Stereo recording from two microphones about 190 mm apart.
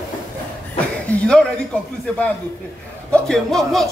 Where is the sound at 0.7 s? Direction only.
5° left (ahead or behind).